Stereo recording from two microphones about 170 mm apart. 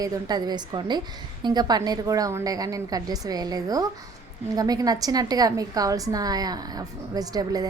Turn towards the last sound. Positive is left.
turn(degrees=-20)  # may be behind; listen again after turning